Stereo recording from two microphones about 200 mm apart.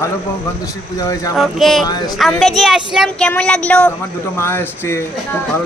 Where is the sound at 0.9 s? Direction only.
15° left (ahead or behind).